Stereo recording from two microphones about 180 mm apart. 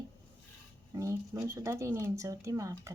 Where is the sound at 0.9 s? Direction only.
20° right (ahead or behind).